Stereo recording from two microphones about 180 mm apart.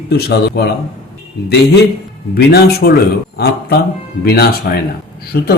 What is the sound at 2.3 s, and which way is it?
A man's voice, 65° left (ahead or behind).